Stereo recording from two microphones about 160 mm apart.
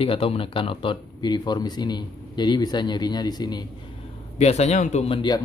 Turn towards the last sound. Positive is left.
turn(degrees=30)  # may be behind; listen again after turning